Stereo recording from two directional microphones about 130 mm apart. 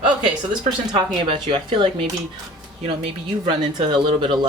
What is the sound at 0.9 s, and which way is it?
Speech, 40° right (ahead or behind).